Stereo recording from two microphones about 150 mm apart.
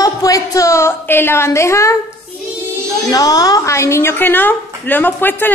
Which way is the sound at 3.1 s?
25° left (ahead or behind).